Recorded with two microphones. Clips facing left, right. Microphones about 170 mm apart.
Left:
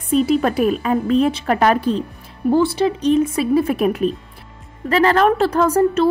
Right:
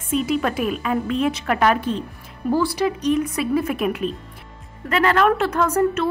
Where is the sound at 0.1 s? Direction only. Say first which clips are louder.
Left 5 dB; 35° left (ahead or behind).